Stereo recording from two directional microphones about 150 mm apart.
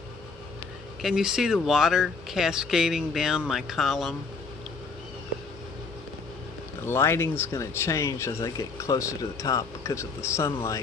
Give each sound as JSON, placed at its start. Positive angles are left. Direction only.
{"t": 1.0, "sound": "speech", "side_deg": -5}
{"t": 6.9, "sound": "speech", "side_deg": 15}